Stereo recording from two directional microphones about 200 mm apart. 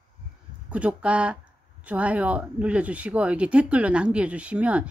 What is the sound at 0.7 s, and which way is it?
Speech, 5° right (ahead or behind).